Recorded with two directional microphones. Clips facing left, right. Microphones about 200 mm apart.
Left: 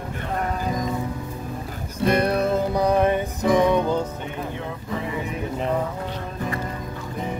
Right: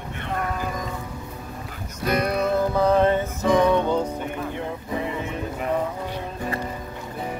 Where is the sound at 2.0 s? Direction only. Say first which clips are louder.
Left 3 dB; 30° left (ahead or behind).